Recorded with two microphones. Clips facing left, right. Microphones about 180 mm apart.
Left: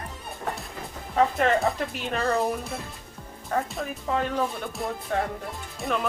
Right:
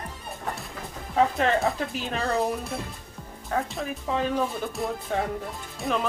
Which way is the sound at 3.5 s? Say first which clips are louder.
Even; centre (ahead or behind).